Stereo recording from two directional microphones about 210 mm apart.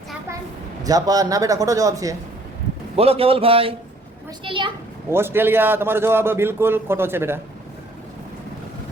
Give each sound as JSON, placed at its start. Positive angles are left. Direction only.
{"t": 0.9, "sound": "a man's voice", "side_deg": -15}
{"t": 2.9, "sound": "a man's voice", "side_deg": -25}
{"t": 5.1, "sound": "a man's voice", "side_deg": -10}